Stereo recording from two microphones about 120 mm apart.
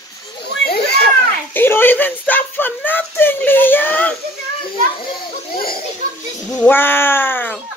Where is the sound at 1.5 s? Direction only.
15° left (ahead or behind).